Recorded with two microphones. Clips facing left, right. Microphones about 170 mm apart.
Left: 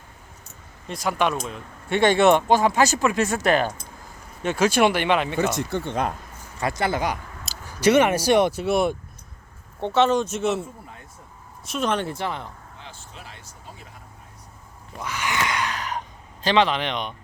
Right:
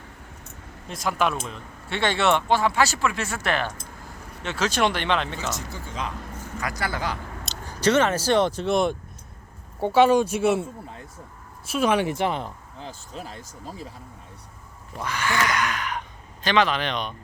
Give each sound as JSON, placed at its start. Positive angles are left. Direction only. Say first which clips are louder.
{"t": 0.9, "sound": "speech", "louder": "left 1 dB", "side_deg": 0}
{"t": 2.0, "sound": "speech", "louder": "left 5 dB", "side_deg": 20}
{"t": 3.4, "sound": "speech", "louder": "left 5 dB", "side_deg": 40}
{"t": 4.5, "sound": "speech", "louder": "left 4 dB", "side_deg": 10}
{"t": 5.4, "sound": "speech", "louder": "left 9 dB", "side_deg": 55}
{"t": 6.6, "sound": "speech", "louder": "left 5 dB", "side_deg": 25}
{"t": 7.4, "sound": "speech", "louder": "left 3 dB", "side_deg": 10}
{"t": 9.8, "sound": "speech", "louder": "right 2 dB", "side_deg": -10}
{"t": 11.7, "sound": "speech", "louder": "right 3 dB", "side_deg": -10}
{"t": 12.8, "sound": "speech", "louder": "right 8 dB", "side_deg": -40}
{"t": 15.0, "sound": "speech", "louder": "right 2 dB", "side_deg": 15}
{"t": 15.6, "sound": "a sound", "louder": "even", "side_deg": 35}